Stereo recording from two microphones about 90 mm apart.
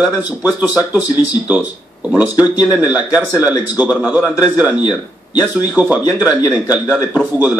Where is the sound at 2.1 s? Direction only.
20° right (ahead or behind).